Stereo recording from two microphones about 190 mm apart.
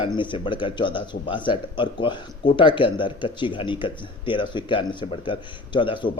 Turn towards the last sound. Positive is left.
turn(degrees=25)  # may be behind; listen again after turning